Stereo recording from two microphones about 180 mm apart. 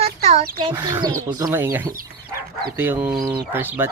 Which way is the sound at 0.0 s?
35° right (ahead or behind).